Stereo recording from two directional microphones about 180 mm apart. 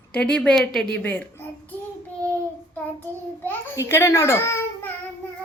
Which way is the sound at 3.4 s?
15° left (ahead or behind).